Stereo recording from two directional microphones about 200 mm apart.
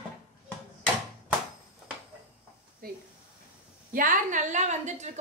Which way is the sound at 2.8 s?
45° right (ahead or behind).